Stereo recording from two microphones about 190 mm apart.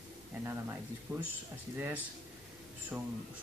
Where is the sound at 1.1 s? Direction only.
15° right (ahead or behind).